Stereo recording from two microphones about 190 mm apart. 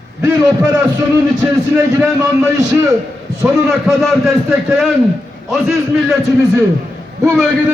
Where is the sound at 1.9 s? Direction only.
20° right (ahead or behind).